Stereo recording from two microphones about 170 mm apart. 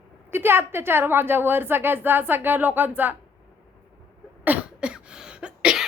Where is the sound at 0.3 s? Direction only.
15° right (ahead or behind).